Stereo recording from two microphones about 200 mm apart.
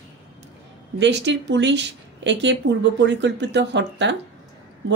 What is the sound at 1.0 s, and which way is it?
Speech, 60° right (ahead or behind).